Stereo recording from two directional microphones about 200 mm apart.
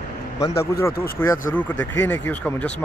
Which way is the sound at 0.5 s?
50° left (ahead or behind).